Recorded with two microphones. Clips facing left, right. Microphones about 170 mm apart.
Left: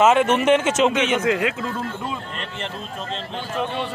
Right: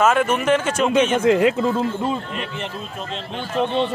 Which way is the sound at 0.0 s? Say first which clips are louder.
Left 2 dB; 20° left (ahead or behind).